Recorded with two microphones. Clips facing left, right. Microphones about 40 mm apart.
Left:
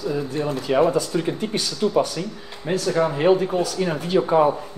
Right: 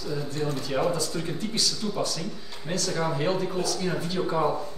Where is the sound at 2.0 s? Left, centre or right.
Left.